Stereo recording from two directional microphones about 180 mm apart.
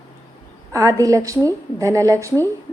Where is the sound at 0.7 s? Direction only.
20° right (ahead or behind).